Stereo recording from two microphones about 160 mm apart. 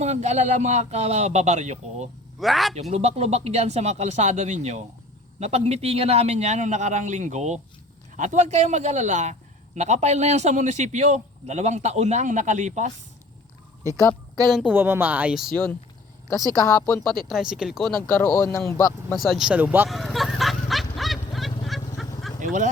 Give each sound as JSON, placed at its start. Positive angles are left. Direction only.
{"t": 0.0, "sound": "a man's voice", "side_deg": -45}
{"t": 2.4, "sound": "speech", "side_deg": 0}
{"t": 2.9, "sound": "a man's voice", "side_deg": -40}
{"t": 14.7, "sound": "speech", "side_deg": -15}
{"t": 16.6, "sound": "speech", "side_deg": 15}
{"t": 17.2, "sound": "speech", "side_deg": -5}
{"t": 18.1, "sound": "speech", "side_deg": 15}
{"t": 19.1, "sound": "speech", "side_deg": 0}
{"t": 19.9, "sound": "vehicle", "side_deg": 0}
{"t": 22.4, "sound": "a sound", "side_deg": -50}